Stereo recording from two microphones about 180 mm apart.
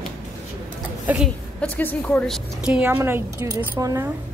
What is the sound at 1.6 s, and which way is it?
Speech, 10° left (ahead or behind).